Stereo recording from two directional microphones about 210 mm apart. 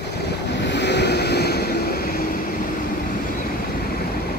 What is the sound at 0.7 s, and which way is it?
Vehicle, 55° left (ahead or behind).